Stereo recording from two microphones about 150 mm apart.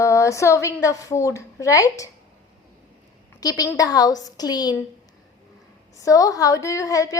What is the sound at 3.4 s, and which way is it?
A woman's voice, 25° left (ahead or behind).